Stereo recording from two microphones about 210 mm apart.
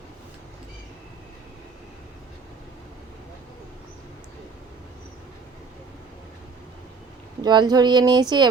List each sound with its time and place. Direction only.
7.4 s speech: 20° right (ahead or behind)